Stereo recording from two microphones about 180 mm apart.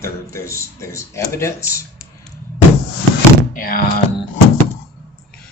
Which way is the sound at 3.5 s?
50° left (ahead or behind).